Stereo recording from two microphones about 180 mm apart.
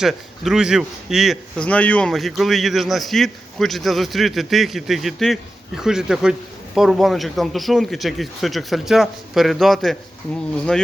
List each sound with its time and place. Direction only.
0.0 s speech: centre (ahead or behind)